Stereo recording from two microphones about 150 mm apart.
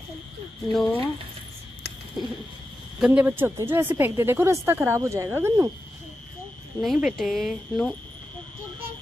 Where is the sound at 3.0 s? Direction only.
10° right (ahead or behind).